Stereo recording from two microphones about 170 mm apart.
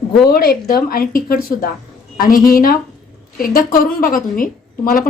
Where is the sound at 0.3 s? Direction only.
60° left (ahead or behind).